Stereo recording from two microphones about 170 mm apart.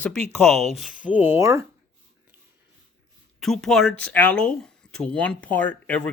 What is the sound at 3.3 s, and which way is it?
Speech, centre (ahead or behind).